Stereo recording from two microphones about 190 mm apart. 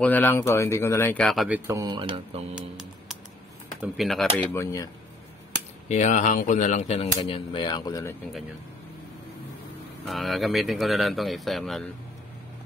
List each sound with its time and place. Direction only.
0.0 s speech: 10° left (ahead or behind)
1.7 s speech: 20° right (ahead or behind)
2.5 s typing: 5° right (ahead or behind)
3.8 s speech: centre (ahead or behind)
4.5 s speech: 15° left (ahead or behind)
5.9 s speech: 40° left (ahead or behind); by 8.1 s 20° left (ahead or behind)
10.0 s speech: centre (ahead or behind)